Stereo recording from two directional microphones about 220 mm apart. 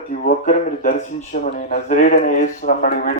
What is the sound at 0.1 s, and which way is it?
Speech, 35° left (ahead or behind).